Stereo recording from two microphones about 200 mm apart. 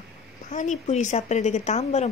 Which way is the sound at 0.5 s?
40° left (ahead or behind).